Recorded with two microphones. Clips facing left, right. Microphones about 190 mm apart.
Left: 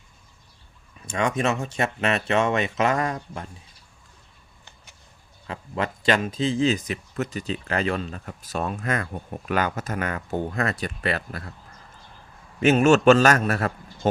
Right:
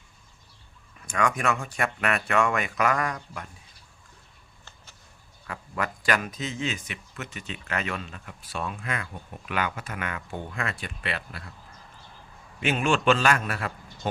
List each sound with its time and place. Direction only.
1.0 s speech: 25° left (ahead or behind)
5.5 s speech: 25° left (ahead or behind); by 11.5 s 45° left (ahead or behind)
12.5 s a man's voice: 45° left (ahead or behind)